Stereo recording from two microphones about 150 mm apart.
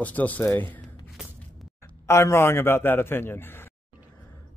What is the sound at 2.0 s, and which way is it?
Speech, 20° left (ahead or behind).